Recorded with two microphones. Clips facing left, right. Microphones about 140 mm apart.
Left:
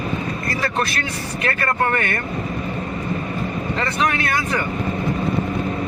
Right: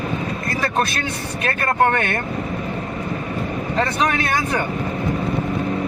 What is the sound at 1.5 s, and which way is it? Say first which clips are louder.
Speech: right 3 dB; 30° right (ahead or behind).